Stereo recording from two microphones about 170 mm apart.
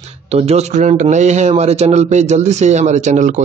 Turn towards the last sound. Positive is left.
turn(degrees=-45)  # may be behind; listen again after turning